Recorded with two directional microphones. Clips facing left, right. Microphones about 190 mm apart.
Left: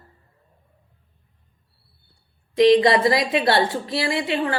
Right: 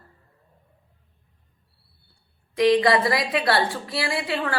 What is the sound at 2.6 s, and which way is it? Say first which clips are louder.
A woman's voice: left 4 dB; 20° left (ahead or behind).